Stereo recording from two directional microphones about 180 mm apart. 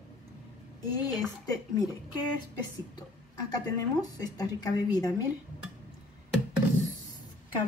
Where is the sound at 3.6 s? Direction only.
20° left (ahead or behind).